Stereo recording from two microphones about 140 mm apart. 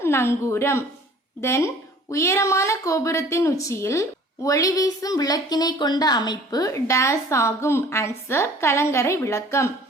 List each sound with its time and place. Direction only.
0.0 s speech: 20° left (ahead or behind)